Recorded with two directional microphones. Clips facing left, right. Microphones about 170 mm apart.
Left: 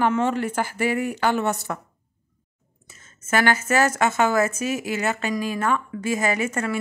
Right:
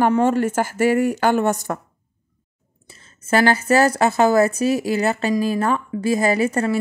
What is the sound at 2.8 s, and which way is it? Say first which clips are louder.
Speech: right 6 dB; 35° right (ahead or behind).